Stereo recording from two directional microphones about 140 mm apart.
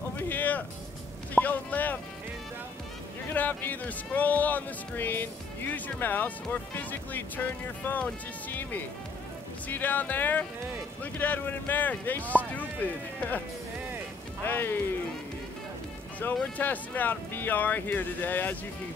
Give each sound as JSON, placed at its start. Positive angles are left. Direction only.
{"t": 0.3, "sound": "a sound", "side_deg": 10}
{"t": 1.3, "sound": "speech", "side_deg": 10}
{"t": 3.3, "sound": "speech", "side_deg": 10}
{"t": 14.4, "sound": "speech", "side_deg": 15}
{"t": 16.5, "sound": "speech", "side_deg": 10}